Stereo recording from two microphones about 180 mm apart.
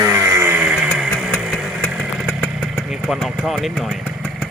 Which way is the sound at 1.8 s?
Centre (ahead or behind).